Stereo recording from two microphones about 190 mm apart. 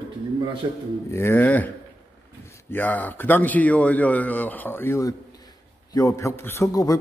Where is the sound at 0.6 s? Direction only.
20° right (ahead or behind).